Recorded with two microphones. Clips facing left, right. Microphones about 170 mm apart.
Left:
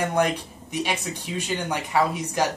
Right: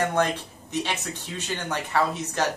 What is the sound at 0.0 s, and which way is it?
Speech, 15° left (ahead or behind).